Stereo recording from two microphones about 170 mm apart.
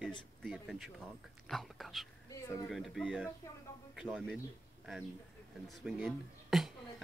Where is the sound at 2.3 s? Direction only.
20° left (ahead or behind).